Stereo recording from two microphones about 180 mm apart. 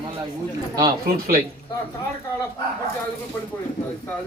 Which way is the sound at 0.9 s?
55° right (ahead or behind).